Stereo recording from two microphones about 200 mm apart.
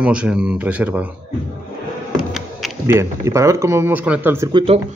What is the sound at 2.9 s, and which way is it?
A man's voice, 15° right (ahead or behind).